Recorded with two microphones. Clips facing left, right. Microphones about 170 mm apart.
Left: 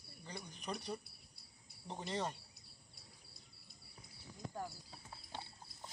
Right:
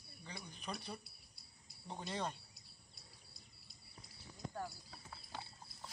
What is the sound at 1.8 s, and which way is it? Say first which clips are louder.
Cricket: left 2 dB; 20° left (ahead or behind).